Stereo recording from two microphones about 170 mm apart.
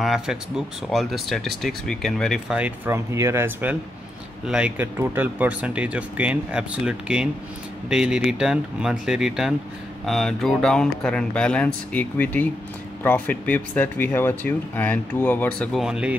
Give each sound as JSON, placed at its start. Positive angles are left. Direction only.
{"t": 0.0, "sound": "speech", "side_deg": -5}
{"t": 2.6, "sound": "speech", "side_deg": -15}
{"t": 15.8, "sound": "speech", "side_deg": -5}